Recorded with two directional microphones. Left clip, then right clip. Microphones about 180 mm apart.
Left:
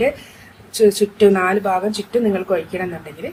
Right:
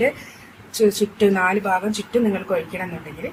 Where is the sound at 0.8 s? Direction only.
10° left (ahead or behind).